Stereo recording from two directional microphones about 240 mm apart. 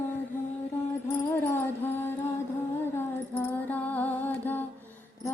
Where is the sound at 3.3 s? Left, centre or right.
Centre.